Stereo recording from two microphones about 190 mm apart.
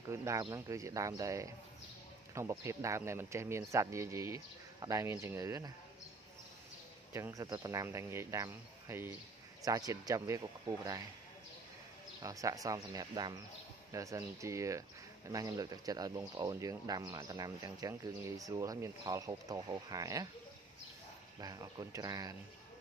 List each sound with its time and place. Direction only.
0.1 s speech: 15° right (ahead or behind)
7.1 s speech: 15° right (ahead or behind)
12.2 s speech: 20° right (ahead or behind)
21.4 s speech: 20° right (ahead or behind)